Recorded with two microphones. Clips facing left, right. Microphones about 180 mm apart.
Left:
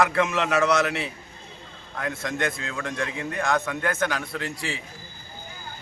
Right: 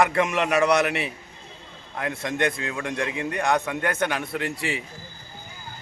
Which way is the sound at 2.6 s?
15° right (ahead or behind).